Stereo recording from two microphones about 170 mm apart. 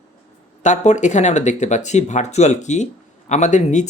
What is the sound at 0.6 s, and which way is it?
Speech, 45° left (ahead or behind).